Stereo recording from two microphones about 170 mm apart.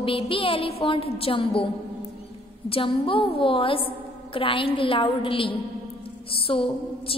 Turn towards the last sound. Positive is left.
turn(degrees=30)  # may be behind; listen again after turning